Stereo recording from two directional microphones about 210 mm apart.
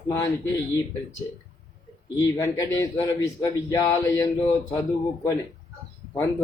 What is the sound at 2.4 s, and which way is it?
Speech, 15° left (ahead or behind).